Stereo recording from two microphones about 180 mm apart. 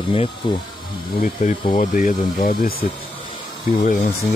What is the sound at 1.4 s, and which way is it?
Speech, 45° left (ahead or behind).